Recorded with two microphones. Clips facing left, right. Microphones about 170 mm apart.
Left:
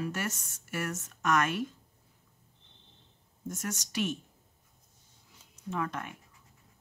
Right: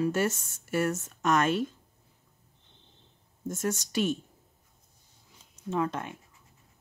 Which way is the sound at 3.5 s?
30° right (ahead or behind).